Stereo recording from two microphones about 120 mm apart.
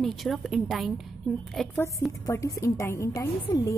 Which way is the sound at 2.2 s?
25° left (ahead or behind).